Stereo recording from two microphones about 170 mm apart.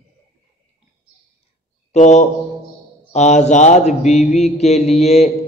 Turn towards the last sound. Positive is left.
turn(degrees=40)  # may be behind; listen again after turning